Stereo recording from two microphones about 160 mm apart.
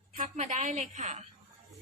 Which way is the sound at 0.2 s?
50° right (ahead or behind).